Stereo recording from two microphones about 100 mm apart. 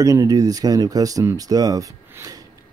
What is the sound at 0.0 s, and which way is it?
Speech, 35° right (ahead or behind).